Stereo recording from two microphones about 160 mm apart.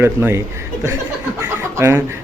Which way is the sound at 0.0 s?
15° right (ahead or behind).